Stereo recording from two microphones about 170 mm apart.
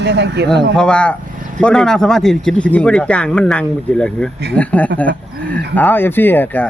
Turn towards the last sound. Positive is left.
turn(degrees=10)  # may be behind; listen again after turning